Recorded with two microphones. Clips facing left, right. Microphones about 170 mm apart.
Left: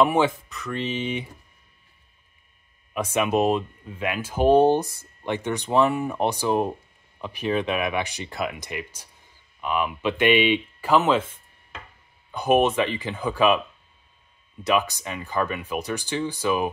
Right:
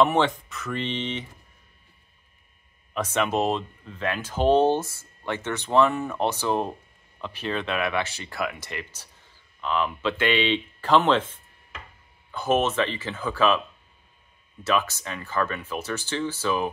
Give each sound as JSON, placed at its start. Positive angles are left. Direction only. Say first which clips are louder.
{"t": 0.0, "sound": "speech", "louder": "left 1 dB", "side_deg": 10}
{"t": 2.9, "sound": "speech", "louder": "left 2 dB", "side_deg": 10}
{"t": 14.6, "sound": "speech", "louder": "left 2 dB", "side_deg": 15}